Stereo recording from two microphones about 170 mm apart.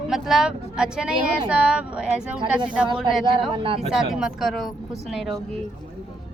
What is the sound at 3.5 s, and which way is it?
Speech, 30° right (ahead or behind).